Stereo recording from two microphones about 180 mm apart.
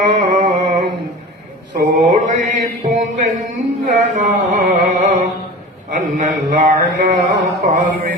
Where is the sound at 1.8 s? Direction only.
45° right (ahead or behind).